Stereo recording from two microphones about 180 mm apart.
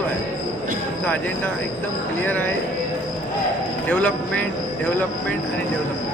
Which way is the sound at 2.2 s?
10° left (ahead or behind).